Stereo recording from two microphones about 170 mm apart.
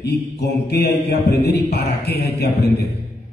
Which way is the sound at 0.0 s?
75° left (ahead or behind).